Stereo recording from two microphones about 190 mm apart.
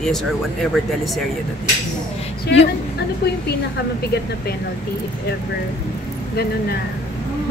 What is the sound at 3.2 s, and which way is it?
Speech, 55° left (ahead or behind).